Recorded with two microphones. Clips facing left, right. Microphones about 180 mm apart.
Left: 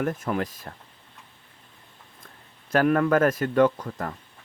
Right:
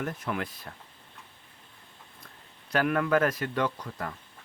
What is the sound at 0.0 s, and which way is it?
Speech, 45° left (ahead or behind).